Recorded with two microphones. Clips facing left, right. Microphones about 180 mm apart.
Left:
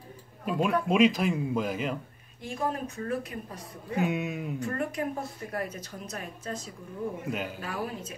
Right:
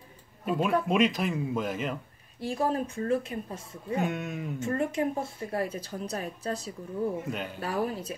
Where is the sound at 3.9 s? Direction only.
Centre (ahead or behind).